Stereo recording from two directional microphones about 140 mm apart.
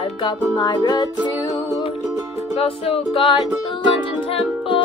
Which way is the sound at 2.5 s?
45° left (ahead or behind).